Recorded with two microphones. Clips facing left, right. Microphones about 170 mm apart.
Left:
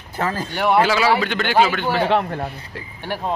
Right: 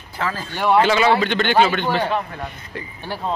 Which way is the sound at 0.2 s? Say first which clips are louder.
Left 2 dB; 45° left (ahead or behind).